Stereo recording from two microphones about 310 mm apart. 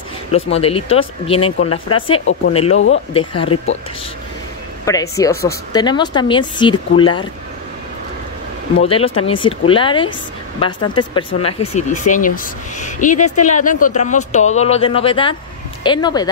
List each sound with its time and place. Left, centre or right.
0.3 s a woman's voice: centre
1.6 s speech: left
2.0 s a woman's voice: centre
4.8 s a woman's voice: centre
8.8 s a woman's voice: centre